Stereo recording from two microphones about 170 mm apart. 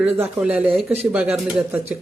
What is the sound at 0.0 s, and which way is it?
Speech, 5° right (ahead or behind).